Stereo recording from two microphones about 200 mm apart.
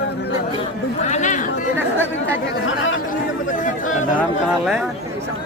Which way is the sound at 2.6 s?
70° left (ahead or behind).